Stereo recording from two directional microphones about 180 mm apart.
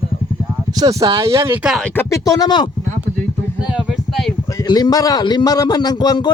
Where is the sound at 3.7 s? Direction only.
Centre (ahead or behind).